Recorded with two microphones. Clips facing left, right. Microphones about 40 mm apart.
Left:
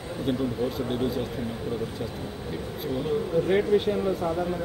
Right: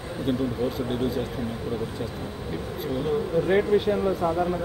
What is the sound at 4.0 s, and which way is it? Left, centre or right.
Speech, centre.